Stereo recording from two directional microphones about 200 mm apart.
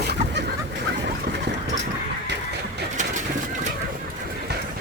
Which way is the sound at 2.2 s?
60° right (ahead or behind).